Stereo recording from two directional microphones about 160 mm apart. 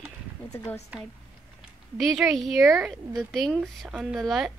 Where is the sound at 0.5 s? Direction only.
20° left (ahead or behind).